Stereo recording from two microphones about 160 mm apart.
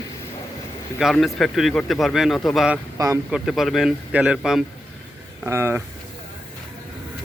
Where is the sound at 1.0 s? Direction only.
Centre (ahead or behind).